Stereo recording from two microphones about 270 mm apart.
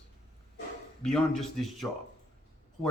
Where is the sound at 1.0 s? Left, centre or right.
Centre.